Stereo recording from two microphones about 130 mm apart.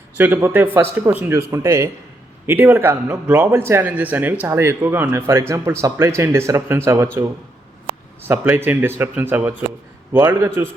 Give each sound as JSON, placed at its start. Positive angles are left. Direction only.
{"t": 0.2, "sound": "a man's voice", "side_deg": -15}
{"t": 8.3, "sound": "a man's voice", "side_deg": -15}